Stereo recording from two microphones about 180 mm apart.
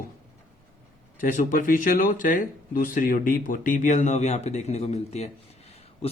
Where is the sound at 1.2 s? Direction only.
45° left (ahead or behind).